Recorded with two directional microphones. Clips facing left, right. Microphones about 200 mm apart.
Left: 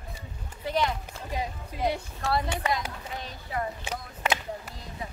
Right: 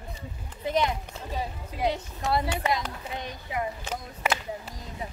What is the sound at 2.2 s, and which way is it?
Speech, 15° right (ahead or behind).